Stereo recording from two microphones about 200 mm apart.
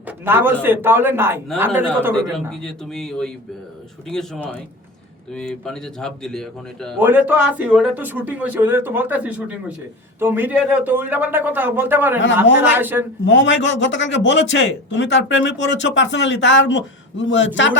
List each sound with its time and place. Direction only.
0.3 s speech: 10° right (ahead or behind)
2.5 s speech: centre (ahead or behind)
7.0 s speech: 10° right (ahead or behind)
13.2 s a man's voice: 65° left (ahead or behind)